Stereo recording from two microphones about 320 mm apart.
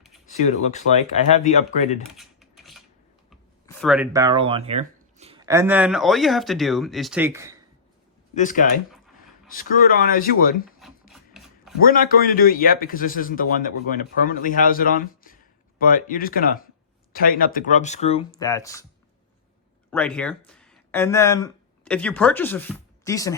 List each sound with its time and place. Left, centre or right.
0.3 s a man's voice: left
2.0 s a sound: centre
3.2 s speech: centre
8.4 s a man's voice: left
11.1 s ratchet: centre
11.8 s a man's voice: left; by 18.9 s centre
19.9 s speech: centre